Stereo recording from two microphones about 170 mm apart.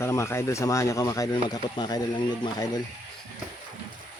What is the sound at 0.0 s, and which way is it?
Speech, 15° left (ahead or behind).